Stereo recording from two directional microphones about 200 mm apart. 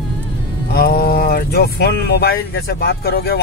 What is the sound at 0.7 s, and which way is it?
Speech, 50° left (ahead or behind).